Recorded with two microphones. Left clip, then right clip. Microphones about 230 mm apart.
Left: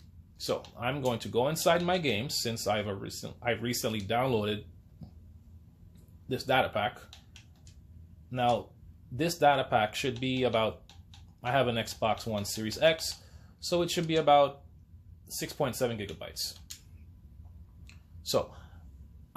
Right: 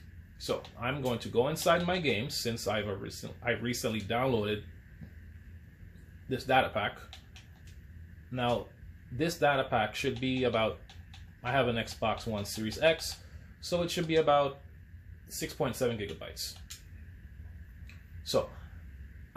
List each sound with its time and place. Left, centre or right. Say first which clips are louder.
0.4 s speech: left 2 dB; left
6.2 s speech: even; left
8.3 s speech: left 3 dB; left
18.3 s speech: left 1 dB; left